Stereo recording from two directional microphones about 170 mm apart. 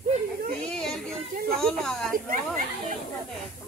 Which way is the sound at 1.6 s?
5° left (ahead or behind).